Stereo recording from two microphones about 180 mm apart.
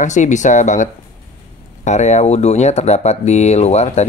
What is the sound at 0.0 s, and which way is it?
Speech, 40° left (ahead or behind).